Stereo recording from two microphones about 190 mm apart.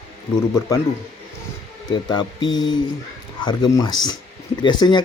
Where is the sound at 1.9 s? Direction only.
20° left (ahead or behind).